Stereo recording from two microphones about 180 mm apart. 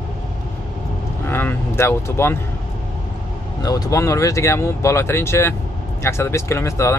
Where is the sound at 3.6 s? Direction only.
20° left (ahead or behind).